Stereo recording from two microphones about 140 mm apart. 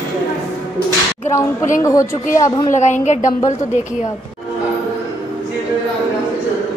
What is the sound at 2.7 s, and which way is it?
Speech, 55° left (ahead or behind).